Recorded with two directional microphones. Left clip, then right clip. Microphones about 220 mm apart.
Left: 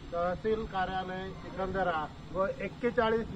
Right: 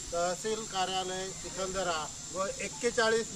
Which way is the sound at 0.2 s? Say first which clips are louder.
Left 2 dB; 70° right (ahead or behind).